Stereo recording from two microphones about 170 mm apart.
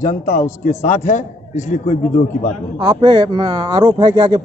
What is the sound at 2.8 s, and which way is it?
Speech, 25° right (ahead or behind).